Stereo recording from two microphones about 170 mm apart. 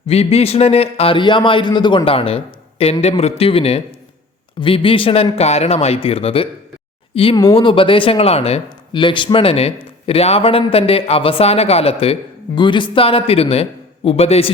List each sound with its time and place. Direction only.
0.1 s a man's voice: 35° left (ahead or behind)